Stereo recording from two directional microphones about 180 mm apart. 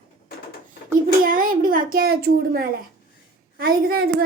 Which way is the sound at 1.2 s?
50° right (ahead or behind).